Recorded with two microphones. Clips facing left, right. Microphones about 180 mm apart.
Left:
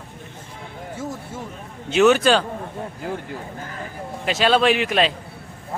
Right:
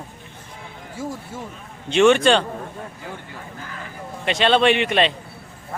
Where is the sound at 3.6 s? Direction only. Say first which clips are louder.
Left 3 dB; 40° left (ahead or behind).